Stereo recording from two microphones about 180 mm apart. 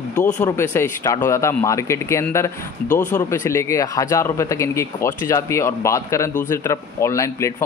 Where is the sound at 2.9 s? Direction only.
45° left (ahead or behind).